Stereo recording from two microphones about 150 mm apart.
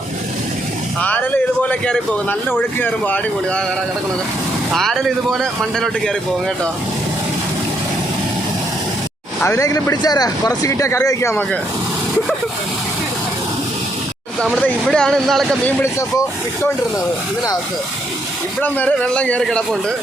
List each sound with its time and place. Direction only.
1.0 s a man's voice: 10° left (ahead or behind)
4.7 s speech: centre (ahead or behind)
9.4 s speech: 20° left (ahead or behind)
14.6 s speech: 5° left (ahead or behind)
15.8 s speech: 20° left (ahead or behind)
18.6 s speech: 10° left (ahead or behind)